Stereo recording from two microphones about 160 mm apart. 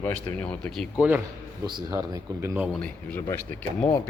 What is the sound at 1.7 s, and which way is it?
Speech, 25° right (ahead or behind).